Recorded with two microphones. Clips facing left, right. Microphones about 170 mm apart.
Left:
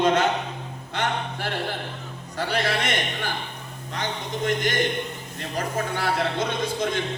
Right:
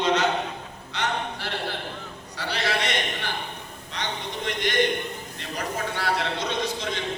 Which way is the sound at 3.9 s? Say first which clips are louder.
Left 3 dB; 45° left (ahead or behind).